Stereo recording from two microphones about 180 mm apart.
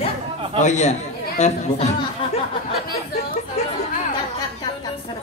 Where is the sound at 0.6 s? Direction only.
40° left (ahead or behind).